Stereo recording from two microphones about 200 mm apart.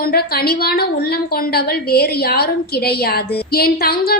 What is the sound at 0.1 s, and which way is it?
A woman's voice, 50° left (ahead or behind).